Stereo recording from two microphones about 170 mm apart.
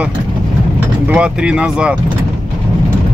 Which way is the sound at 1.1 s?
5° right (ahead or behind).